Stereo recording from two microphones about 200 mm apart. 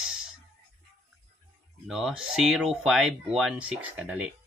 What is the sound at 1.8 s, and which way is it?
Speech, centre (ahead or behind).